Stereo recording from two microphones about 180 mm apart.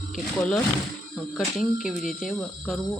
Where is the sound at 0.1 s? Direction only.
5° left (ahead or behind).